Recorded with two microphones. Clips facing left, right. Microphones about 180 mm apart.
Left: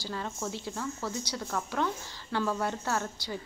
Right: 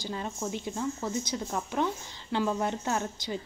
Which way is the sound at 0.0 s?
20° right (ahead or behind).